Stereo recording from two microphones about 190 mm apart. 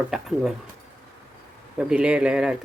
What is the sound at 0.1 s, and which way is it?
Speech, centre (ahead or behind).